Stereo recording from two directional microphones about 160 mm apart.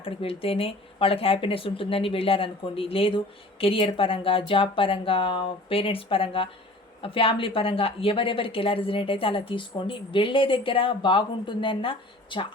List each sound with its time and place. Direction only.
0.0 s a woman's voice: 35° left (ahead or behind)